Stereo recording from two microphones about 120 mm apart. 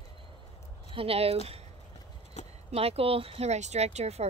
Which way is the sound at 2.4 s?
70° left (ahead or behind).